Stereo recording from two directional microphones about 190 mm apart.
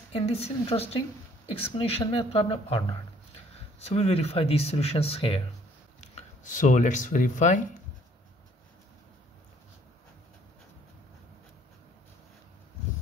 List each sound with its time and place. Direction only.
0.1 s a woman's voice: 30° left (ahead or behind)